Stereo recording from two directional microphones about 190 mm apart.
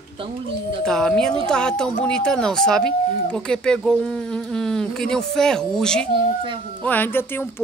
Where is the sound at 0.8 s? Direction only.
5° left (ahead or behind).